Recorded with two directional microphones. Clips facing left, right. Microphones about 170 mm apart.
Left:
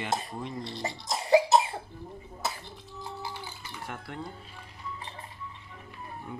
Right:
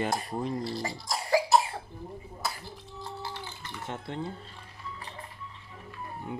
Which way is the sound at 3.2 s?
10° left (ahead or behind).